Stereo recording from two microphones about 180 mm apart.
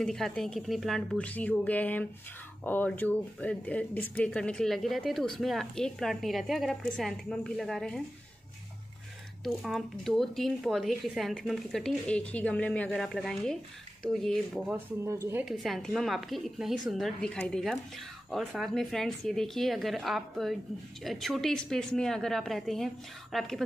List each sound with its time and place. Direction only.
0.0 s a woman's voice: 5° left (ahead or behind)
9.4 s speech: centre (ahead or behind)
15.0 s a woman's voice: 15° right (ahead or behind)
15.4 s speech: centre (ahead or behind)